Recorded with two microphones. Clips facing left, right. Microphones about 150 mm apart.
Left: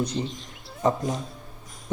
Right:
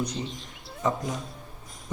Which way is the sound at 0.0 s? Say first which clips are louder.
Left 3 dB; 30° left (ahead or behind).